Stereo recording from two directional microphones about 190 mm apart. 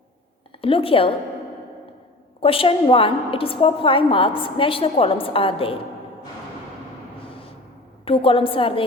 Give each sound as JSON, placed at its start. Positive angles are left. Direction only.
{"t": 0.6, "sound": "a woman's voice", "side_deg": 30}
{"t": 2.4, "sound": "a woman's voice", "side_deg": 30}
{"t": 8.0, "sound": "a woman's voice", "side_deg": 30}